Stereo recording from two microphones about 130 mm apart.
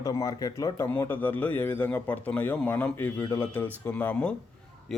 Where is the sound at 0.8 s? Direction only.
15° left (ahead or behind).